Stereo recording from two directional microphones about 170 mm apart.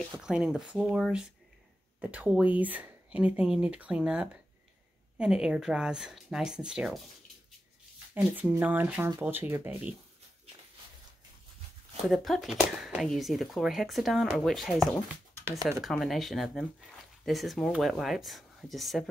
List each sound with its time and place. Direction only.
0.2 s speech: 5° right (ahead or behind)
8.1 s speech: 10° right (ahead or behind)
12.1 s speech: centre (ahead or behind)